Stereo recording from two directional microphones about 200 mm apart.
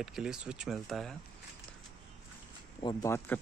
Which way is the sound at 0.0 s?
5° right (ahead or behind).